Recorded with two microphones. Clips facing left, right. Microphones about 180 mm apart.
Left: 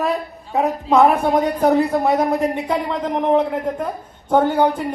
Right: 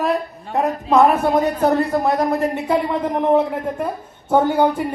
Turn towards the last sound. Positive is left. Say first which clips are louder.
# even
turn(degrees=-10)  # may be behind; listen again after turning